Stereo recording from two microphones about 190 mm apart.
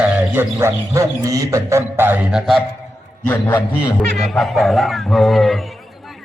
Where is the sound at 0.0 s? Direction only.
10° right (ahead or behind).